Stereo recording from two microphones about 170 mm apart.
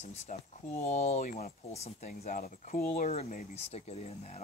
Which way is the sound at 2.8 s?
40° left (ahead or behind).